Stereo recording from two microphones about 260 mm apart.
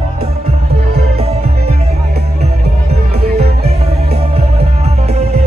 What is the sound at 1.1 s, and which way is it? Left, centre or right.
Music, right.